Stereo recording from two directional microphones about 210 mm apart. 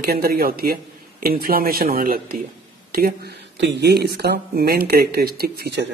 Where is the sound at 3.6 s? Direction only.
55° right (ahead or behind).